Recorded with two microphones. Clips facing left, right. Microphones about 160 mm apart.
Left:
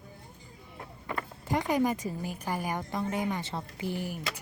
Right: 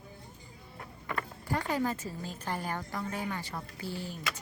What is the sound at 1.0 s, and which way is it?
Speech, 20° left (ahead or behind).